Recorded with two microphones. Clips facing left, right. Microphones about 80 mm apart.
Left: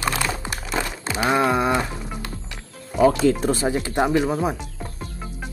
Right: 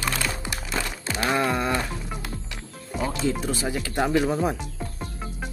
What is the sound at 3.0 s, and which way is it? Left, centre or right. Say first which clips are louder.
Speech: left 10 dB; left.